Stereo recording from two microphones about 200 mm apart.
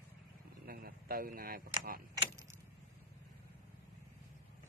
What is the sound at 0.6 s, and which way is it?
Speech, 50° right (ahead or behind).